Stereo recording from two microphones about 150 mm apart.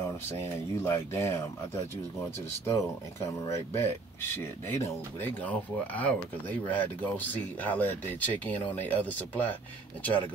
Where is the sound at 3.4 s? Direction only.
20° left (ahead or behind).